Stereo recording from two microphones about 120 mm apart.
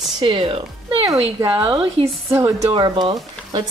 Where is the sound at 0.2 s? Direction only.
45° right (ahead or behind).